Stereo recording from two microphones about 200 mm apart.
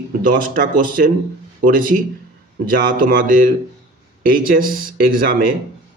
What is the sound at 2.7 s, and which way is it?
Speech, 45° right (ahead or behind).